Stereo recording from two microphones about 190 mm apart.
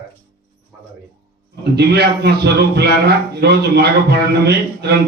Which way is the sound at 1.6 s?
60° right (ahead or behind).